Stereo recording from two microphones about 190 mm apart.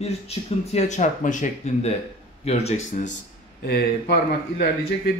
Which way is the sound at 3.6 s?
55° left (ahead or behind).